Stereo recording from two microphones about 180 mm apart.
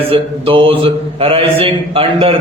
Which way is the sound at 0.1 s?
30° right (ahead or behind).